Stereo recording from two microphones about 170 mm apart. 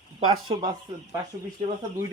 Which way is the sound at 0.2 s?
25° right (ahead or behind).